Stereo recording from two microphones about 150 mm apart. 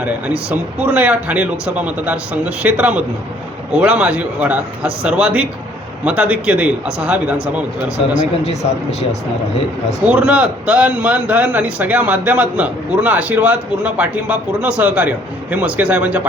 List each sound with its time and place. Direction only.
0.5 s a man's voice: 10° right (ahead or behind)
8.4 s speech: 40° left (ahead or behind)
10.1 s a man's voice: 10° right (ahead or behind)